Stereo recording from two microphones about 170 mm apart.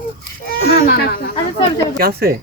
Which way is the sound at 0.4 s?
65° left (ahead or behind).